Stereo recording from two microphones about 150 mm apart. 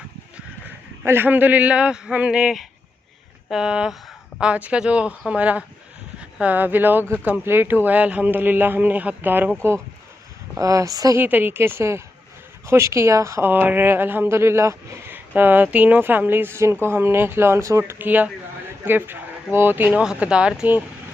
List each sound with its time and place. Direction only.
1.0 s speech: 15° right (ahead or behind)
10.6 s speech: 20° right (ahead or behind)
11.2 s speech: 15° right (ahead or behind)